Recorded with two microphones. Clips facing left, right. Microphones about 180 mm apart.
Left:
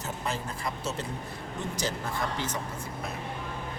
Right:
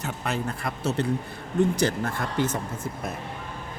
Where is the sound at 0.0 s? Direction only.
65° right (ahead or behind).